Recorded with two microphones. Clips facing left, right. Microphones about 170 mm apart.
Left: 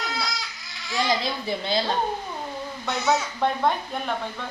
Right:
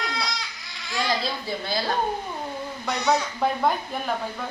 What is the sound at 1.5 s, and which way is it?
Speech, 20° left (ahead or behind).